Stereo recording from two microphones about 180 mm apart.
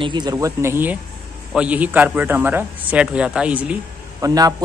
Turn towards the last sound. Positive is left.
turn(degrees=-20)  # may be behind; listen again after turning